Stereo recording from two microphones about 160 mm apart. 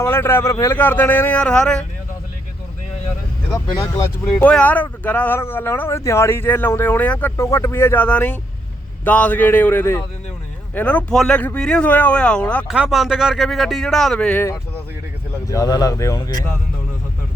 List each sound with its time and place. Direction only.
0.0 s speech: 15° left (ahead or behind)
3.5 s speech: 25° left (ahead or behind)
4.4 s speech: 10° left (ahead or behind)
12.6 s speech: 5° right (ahead or behind); by 16.4 s 25° left (ahead or behind)